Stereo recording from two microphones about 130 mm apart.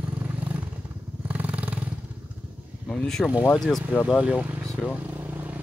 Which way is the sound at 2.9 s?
5° left (ahead or behind).